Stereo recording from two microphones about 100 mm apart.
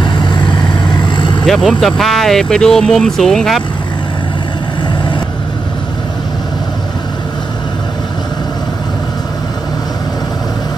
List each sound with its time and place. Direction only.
0.0 s vehicle: 50° left (ahead or behind)
1.4 s speech: centre (ahead or behind)